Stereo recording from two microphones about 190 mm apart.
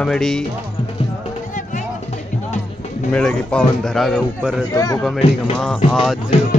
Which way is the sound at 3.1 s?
5° left (ahead or behind).